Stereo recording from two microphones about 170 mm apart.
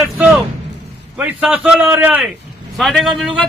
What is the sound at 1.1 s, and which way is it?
A man's voice, 5° right (ahead or behind).